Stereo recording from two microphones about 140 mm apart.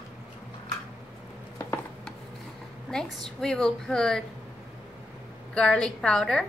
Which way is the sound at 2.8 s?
5° left (ahead or behind).